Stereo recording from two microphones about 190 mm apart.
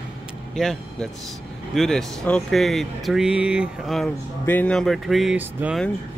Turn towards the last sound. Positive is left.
turn(degrees=-10)  # may be behind; listen again after turning